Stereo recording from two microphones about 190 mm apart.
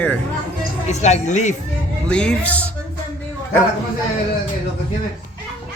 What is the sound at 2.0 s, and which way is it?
Speech, 5° left (ahead or behind).